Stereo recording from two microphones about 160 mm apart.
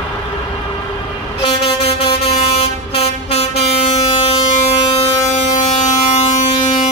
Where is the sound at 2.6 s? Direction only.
40° left (ahead or behind).